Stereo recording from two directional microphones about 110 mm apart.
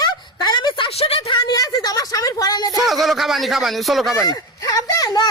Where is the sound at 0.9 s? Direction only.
55° left (ahead or behind).